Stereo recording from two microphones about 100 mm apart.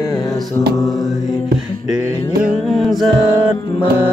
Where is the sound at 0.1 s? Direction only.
35° left (ahead or behind).